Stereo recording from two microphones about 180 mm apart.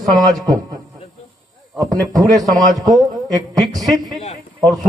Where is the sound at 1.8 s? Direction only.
20° right (ahead or behind).